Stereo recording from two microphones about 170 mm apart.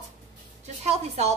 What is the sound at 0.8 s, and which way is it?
Speech, 40° right (ahead or behind).